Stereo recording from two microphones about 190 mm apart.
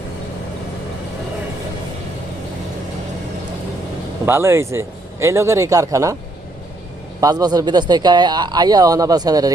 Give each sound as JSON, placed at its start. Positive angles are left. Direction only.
{"t": 4.3, "sound": "speech", "side_deg": -15}
{"t": 7.2, "sound": "speech", "side_deg": -20}